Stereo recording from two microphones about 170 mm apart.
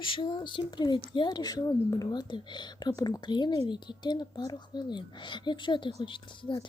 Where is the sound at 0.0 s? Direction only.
30° left (ahead or behind).